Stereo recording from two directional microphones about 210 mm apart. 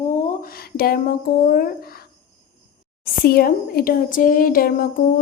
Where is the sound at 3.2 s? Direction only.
45° left (ahead or behind).